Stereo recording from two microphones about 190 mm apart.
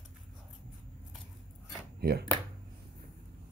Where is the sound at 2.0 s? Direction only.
55° right (ahead or behind).